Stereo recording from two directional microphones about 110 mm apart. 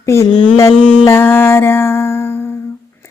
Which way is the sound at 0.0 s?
25° left (ahead or behind).